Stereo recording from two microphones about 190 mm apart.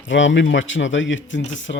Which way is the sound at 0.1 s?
75° left (ahead or behind).